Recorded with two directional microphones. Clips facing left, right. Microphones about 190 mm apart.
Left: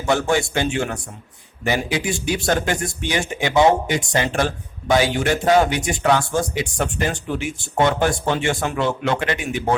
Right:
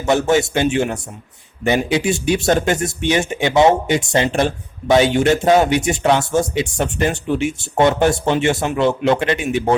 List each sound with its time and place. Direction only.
0.0 s speech: 20° right (ahead or behind)